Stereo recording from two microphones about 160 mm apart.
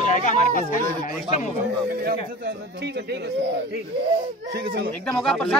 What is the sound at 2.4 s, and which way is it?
Speech, 90° right.